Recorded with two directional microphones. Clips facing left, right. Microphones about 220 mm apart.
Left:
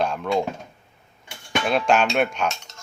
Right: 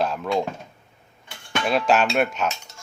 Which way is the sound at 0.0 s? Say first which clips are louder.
Left 1 dB; centre (ahead or behind).